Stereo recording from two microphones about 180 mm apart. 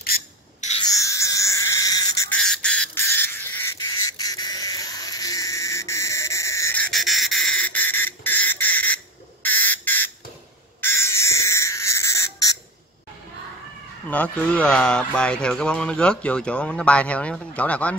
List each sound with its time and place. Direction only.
0.8 s frog: 15° left (ahead or behind)
2.2 s squawk: 5° left (ahead or behind)
4.0 s a sound: 20° left (ahead or behind)
14.1 s speech: 10° left (ahead or behind)